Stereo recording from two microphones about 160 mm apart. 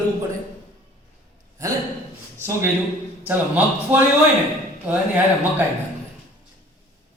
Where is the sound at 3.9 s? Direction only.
10° right (ahead or behind).